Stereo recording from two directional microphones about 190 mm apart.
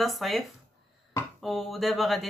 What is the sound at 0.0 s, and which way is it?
Speech, centre (ahead or behind).